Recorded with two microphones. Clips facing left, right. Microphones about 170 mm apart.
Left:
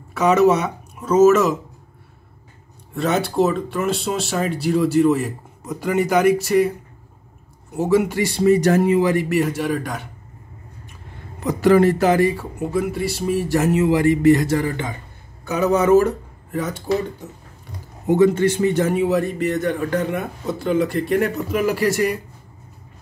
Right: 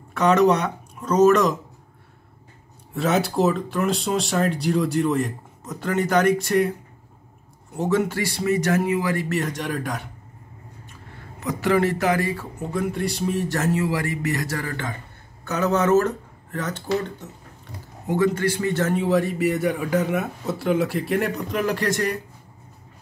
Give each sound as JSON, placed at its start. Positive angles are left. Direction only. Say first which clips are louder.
{"t": 0.1, "sound": "speech", "louder": "left 2 dB", "side_deg": 5}
{"t": 2.9, "sound": "a man's voice", "louder": "left 1 dB", "side_deg": 0}
{"t": 7.7, "sound": "speech", "louder": "left 4 dB", "side_deg": 10}
{"t": 8.5, "sound": "speech", "louder": "left 6 dB", "side_deg": 35}
{"t": 9.1, "sound": "a man's voice", "louder": "left 6 dB", "side_deg": 15}
{"t": 11.3, "sound": "speech", "louder": "left 6 dB", "side_deg": 35}
{"t": 12.3, "sound": "speech", "louder": "left 5 dB", "side_deg": 10}
{"t": 18.0, "sound": "a man's voice", "louder": "left 6 dB", "side_deg": 20}